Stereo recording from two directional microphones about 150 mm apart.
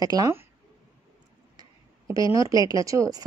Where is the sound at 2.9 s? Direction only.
25° right (ahead or behind).